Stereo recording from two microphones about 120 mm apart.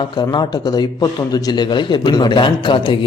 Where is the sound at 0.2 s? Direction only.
35° left (ahead or behind).